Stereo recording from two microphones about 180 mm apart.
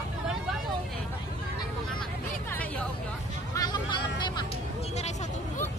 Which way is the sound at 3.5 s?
20° left (ahead or behind).